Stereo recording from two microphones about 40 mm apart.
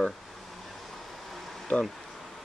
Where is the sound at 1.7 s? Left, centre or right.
Left.